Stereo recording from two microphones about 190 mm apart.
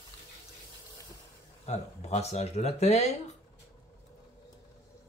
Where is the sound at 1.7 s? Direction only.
35° left (ahead or behind).